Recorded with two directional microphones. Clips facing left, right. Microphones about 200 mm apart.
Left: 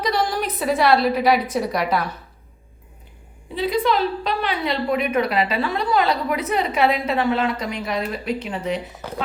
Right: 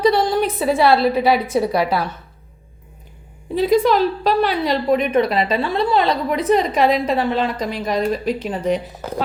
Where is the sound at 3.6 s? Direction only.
45° right (ahead or behind).